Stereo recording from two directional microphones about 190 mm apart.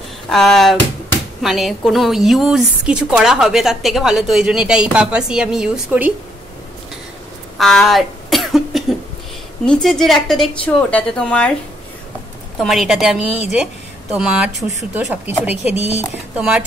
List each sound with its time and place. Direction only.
0.3 s a woman's voice: centre (ahead or behind)
7.5 s a woman's voice: centre (ahead or behind)
12.5 s a woman's voice: centre (ahead or behind)
15.7 s speech: 35° left (ahead or behind)
16.3 s a woman's voice: 5° right (ahead or behind)